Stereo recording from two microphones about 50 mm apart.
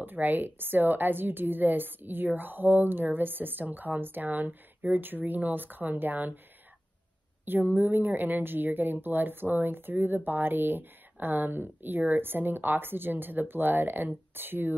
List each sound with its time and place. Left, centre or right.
0.0 s a woman's voice: right
7.4 s a woman's voice: right